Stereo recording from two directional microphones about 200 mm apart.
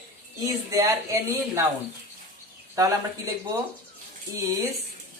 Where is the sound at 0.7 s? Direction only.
15° right (ahead or behind).